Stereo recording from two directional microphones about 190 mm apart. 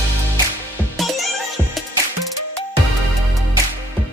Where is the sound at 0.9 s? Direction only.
Centre (ahead or behind).